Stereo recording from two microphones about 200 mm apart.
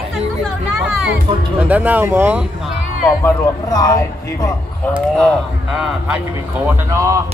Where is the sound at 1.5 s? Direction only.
10° right (ahead or behind).